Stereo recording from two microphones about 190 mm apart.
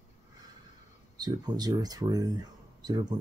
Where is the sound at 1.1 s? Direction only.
20° right (ahead or behind).